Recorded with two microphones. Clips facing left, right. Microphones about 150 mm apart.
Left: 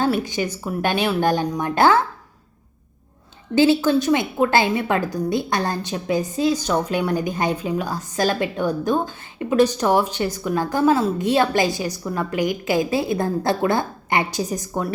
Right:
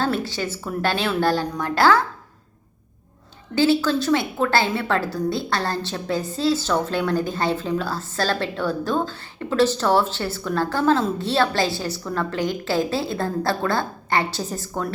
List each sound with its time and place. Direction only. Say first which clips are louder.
0.0 s a woman's voice: left 3 dB; 15° left (ahead or behind)
3.5 s a woman's voice: left 3 dB; 20° left (ahead or behind)